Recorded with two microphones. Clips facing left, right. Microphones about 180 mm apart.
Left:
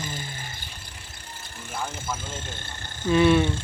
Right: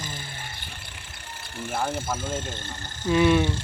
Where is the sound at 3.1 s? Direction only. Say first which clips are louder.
Left 1 dB; 10° right (ahead or behind).